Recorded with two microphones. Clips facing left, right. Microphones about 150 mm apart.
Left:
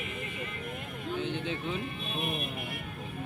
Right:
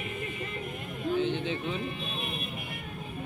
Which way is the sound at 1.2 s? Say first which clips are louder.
Right 4 dB; 10° left (ahead or behind).